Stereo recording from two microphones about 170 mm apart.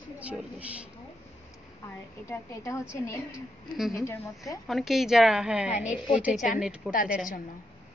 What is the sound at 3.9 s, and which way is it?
Speech, 15° left (ahead or behind).